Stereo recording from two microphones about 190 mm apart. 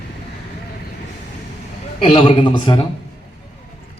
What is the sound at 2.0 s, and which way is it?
Speech, 30° left (ahead or behind).